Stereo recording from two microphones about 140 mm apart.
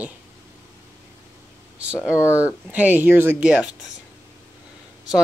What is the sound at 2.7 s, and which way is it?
Speech, 10° right (ahead or behind).